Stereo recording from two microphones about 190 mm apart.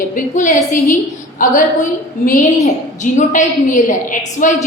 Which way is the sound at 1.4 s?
45° left (ahead or behind).